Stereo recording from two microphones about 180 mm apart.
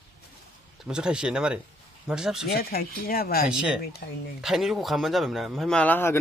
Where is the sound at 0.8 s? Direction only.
5° right (ahead or behind).